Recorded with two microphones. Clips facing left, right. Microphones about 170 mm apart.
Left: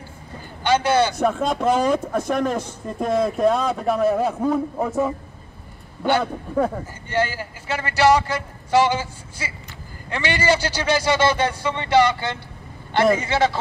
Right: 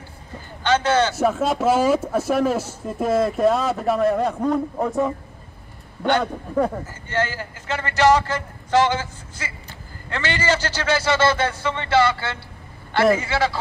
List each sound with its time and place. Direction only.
0.7 s a man's voice: 10° left (ahead or behind)
1.1 s speech: 5° right (ahead or behind)
7.1 s a man's voice: 10° left (ahead or behind)